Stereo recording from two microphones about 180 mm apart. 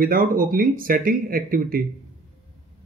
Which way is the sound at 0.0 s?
50° right (ahead or behind).